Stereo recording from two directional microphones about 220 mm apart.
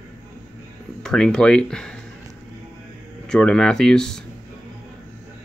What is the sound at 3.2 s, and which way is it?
Speech, 5° left (ahead or behind).